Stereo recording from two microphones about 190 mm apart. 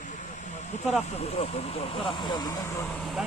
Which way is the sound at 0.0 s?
40° left (ahead or behind).